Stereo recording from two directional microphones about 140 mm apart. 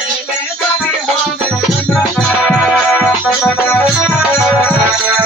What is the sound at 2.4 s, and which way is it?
Music, centre (ahead or behind).